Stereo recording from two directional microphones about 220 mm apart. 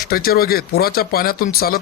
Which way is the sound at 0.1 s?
45° left (ahead or behind).